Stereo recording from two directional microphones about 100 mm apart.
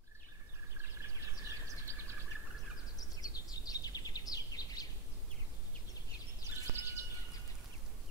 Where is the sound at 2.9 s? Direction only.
40° left (ahead or behind).